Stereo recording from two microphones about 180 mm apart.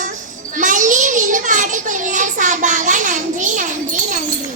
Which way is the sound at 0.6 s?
45° right (ahead or behind).